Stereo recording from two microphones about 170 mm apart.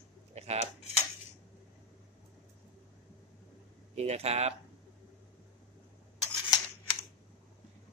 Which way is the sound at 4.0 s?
40° right (ahead or behind).